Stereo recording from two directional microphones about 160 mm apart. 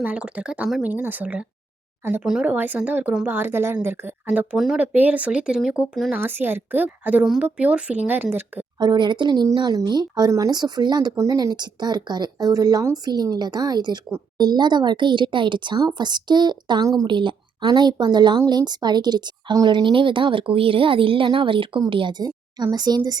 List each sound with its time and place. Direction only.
0.0 s speech: 10° right (ahead or behind)
8.8 s speech: 25° right (ahead or behind)